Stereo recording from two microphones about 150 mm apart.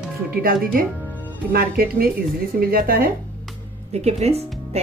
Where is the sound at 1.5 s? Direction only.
90° right.